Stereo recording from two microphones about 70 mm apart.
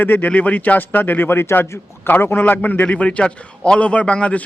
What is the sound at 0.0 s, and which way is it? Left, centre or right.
A man's voice, left.